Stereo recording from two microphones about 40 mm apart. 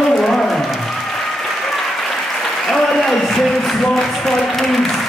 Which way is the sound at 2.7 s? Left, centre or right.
Centre.